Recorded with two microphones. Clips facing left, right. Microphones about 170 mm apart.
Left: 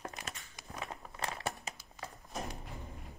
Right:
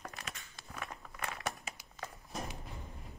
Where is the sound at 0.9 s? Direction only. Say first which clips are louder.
Left 2 dB; 30° left (ahead or behind).